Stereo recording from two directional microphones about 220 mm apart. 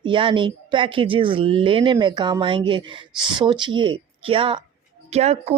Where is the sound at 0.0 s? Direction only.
25° right (ahead or behind).